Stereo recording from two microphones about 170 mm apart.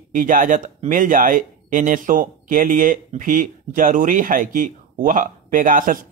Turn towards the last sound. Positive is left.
turn(degrees=-55)  # may be behind; listen again after turning